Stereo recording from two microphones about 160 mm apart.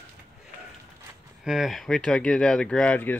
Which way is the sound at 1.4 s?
Centre (ahead or behind).